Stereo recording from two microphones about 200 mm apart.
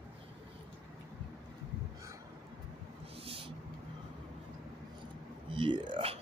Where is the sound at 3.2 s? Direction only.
25° right (ahead or behind).